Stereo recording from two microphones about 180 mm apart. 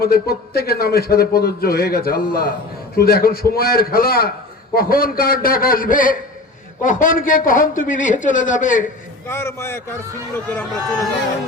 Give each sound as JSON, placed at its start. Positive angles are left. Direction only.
{"t": 0.0, "sound": "a man's voice", "side_deg": 60}
{"t": 9.2, "sound": "speech", "side_deg": 15}